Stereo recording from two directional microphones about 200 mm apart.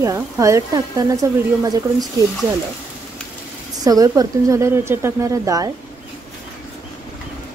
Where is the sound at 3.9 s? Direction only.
15° right (ahead or behind).